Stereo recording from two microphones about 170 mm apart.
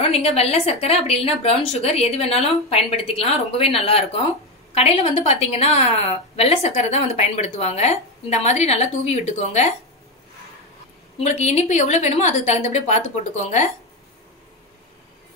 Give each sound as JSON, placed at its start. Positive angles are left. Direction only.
{"t": 0.0, "sound": "a woman's voice", "side_deg": 35}
{"t": 11.1, "sound": "a woman's voice", "side_deg": 40}